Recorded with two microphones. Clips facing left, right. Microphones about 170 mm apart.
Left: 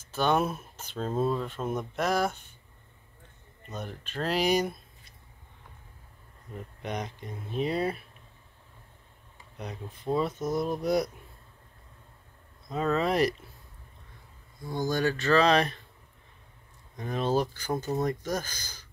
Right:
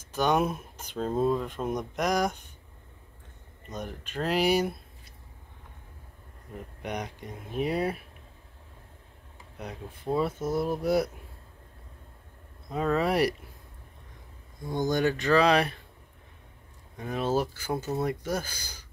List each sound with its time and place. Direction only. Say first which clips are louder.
0.1 s speech: right 1 dB; 10° right (ahead or behind)
3.6 s speech: right 1 dB; 10° right (ahead or behind)
6.8 s speech: even; 10° right (ahead or behind)
9.6 s speech: even; 10° right (ahead or behind)
12.6 s speech: right 1 dB; 10° right (ahead or behind)
14.6 s speech: right 2 dB; 20° right (ahead or behind)
16.9 s speech: even; 10° right (ahead or behind)